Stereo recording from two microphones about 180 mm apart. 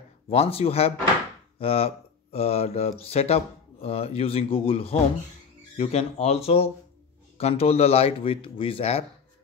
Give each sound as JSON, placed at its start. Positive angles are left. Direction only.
{"t": 0.3, "sound": "speech", "side_deg": 35}